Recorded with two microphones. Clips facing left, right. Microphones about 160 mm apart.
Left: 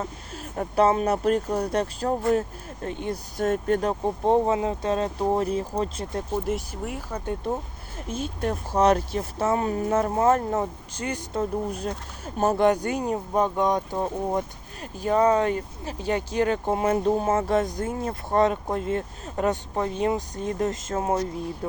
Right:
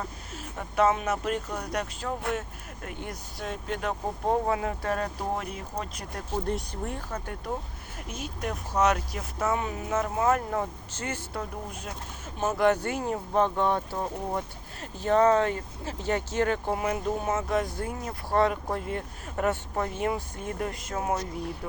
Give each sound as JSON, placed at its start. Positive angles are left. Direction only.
{"t": 0.0, "sound": "speech", "side_deg": 40}
{"t": 3.3, "sound": "speech", "side_deg": 50}
{"t": 4.4, "sound": "speech", "side_deg": 20}
{"t": 6.4, "sound": "speech", "side_deg": 5}
{"t": 7.9, "sound": "speech", "side_deg": 30}
{"t": 11.7, "sound": "speech", "side_deg": 35}
{"t": 12.6, "sound": "speech", "side_deg": 15}